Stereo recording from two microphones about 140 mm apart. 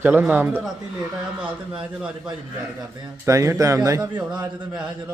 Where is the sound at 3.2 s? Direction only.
20° right (ahead or behind).